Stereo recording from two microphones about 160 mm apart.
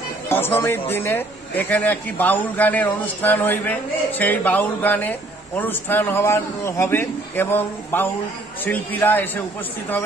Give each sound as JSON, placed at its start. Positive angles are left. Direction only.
{"t": 0.3, "sound": "speech", "side_deg": 15}